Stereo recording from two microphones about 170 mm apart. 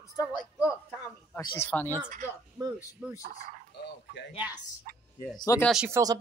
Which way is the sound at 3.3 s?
65° right (ahead or behind).